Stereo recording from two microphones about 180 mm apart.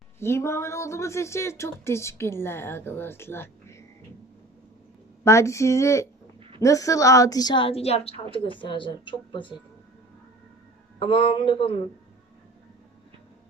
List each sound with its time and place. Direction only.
0.2 s speech: 15° left (ahead or behind)
5.2 s a woman's voice: 15° left (ahead or behind)
11.0 s a woman's voice: 30° left (ahead or behind)